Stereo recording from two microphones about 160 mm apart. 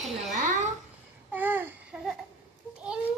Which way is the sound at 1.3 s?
10° right (ahead or behind).